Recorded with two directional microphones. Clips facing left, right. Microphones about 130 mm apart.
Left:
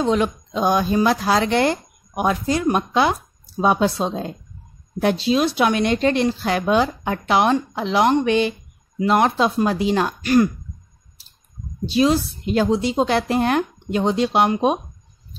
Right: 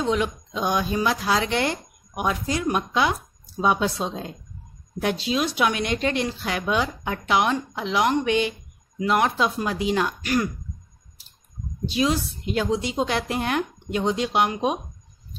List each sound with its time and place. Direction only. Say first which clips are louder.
0.0 s a woman's voice: left 4 dB; 40° left (ahead or behind)
11.8 s a woman's voice: left 6 dB; 35° left (ahead or behind)